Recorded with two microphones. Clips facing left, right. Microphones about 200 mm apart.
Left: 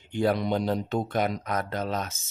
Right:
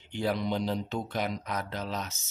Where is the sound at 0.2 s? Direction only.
55° left (ahead or behind).